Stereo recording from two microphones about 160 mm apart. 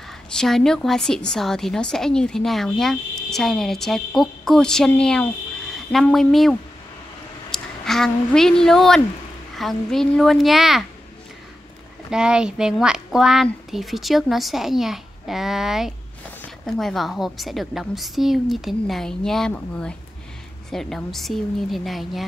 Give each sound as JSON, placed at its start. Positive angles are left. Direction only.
{"t": 0.3, "sound": "a woman's voice", "side_deg": 5}
{"t": 7.5, "sound": "a woman's voice", "side_deg": 5}
{"t": 12.1, "sound": "a woman's voice", "side_deg": -5}